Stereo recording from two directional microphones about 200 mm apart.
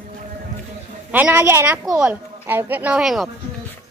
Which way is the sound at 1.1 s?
10° right (ahead or behind).